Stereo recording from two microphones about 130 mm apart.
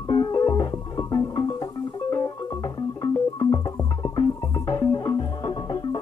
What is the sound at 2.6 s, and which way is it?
Music, 30° left (ahead or behind).